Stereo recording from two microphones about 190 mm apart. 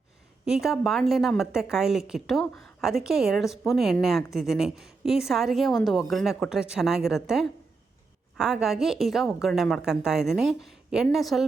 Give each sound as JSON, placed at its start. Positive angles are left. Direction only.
{"t": 0.4, "sound": "a woman's voice", "side_deg": 0}